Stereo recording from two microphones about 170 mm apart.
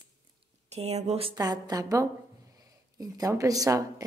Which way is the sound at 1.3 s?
20° right (ahead or behind).